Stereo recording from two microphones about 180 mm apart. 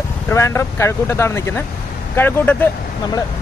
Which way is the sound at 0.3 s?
15° left (ahead or behind).